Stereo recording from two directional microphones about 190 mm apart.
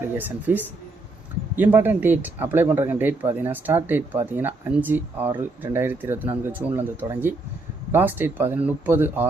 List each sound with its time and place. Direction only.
0.2 s speech: 10° right (ahead or behind)